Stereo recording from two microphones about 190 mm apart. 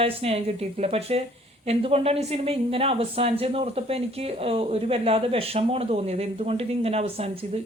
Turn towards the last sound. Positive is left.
turn(degrees=-30)  # may be behind; listen again after turning